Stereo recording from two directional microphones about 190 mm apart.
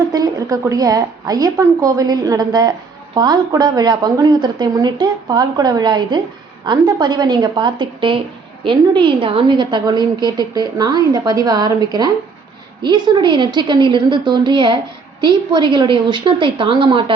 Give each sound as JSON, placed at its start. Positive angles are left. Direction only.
{"t": 0.1, "sound": "a woman's voice", "side_deg": -20}